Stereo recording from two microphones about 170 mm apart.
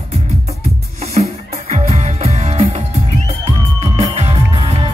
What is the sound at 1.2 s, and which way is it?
Music, 45° right (ahead or behind).